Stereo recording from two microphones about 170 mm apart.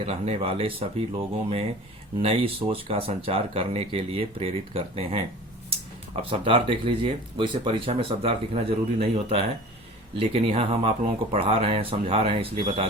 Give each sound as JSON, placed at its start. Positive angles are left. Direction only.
{"t": 0.0, "sound": "speech", "side_deg": -35}
{"t": 6.4, "sound": "speech", "side_deg": -30}